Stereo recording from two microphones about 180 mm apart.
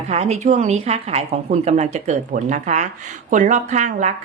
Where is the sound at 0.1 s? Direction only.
40° right (ahead or behind).